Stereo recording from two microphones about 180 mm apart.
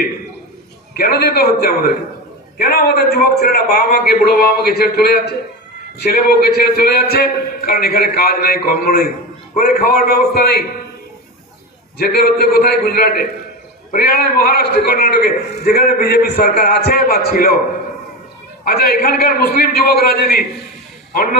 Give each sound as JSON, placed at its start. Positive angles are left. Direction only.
{"t": 0.9, "sound": "a man's voice", "side_deg": 60}
{"t": 6.5, "sound": "a man's voice", "side_deg": 60}
{"t": 12.0, "sound": "a man's voice", "side_deg": 60}
{"t": 18.6, "sound": "a man's voice", "side_deg": 60}